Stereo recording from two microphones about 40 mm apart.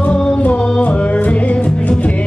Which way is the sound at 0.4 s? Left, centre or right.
Left.